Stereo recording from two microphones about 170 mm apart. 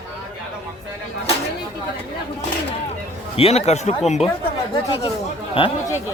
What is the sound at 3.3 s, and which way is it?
Speech, 35° left (ahead or behind).